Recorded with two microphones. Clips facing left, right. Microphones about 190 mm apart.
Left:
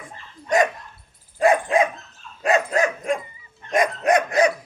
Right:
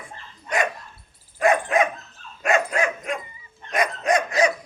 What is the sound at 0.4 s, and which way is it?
Dog, 40° left (ahead or behind).